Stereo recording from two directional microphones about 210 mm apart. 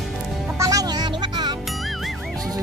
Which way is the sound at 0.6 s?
15° right (ahead or behind).